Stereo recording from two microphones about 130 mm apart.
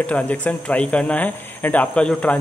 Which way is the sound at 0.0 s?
10° left (ahead or behind).